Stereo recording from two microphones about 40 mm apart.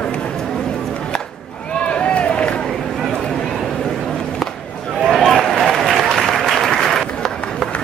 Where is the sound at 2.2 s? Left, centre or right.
Left.